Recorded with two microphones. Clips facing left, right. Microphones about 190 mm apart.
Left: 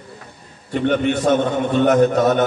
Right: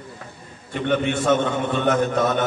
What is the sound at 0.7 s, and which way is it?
A man's voice, 40° left (ahead or behind).